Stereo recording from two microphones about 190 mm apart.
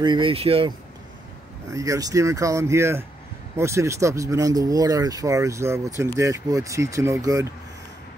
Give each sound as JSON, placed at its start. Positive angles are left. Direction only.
{"t": 0.0, "sound": "speech", "side_deg": -25}
{"t": 1.7, "sound": "speech", "side_deg": -15}